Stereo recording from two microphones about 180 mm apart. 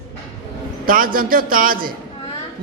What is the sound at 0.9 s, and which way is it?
A man's voice, 50° right (ahead or behind).